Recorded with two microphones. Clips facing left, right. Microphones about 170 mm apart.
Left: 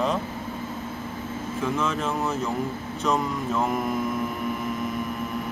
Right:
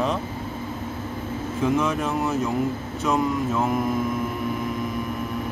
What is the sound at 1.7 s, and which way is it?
Speech, 15° right (ahead or behind).